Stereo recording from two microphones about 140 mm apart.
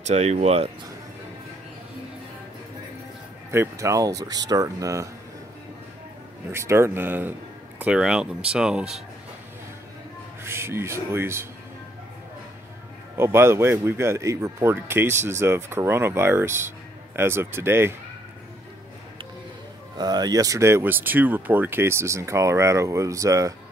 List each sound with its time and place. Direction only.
0.0 s speech: 55° right (ahead or behind)
3.5 s speech: 20° right (ahead or behind)
6.5 s speech: 20° right (ahead or behind)
10.4 s speech: 20° right (ahead or behind)
13.2 s speech: 15° right (ahead or behind)
20.0 s speech: 30° right (ahead or behind)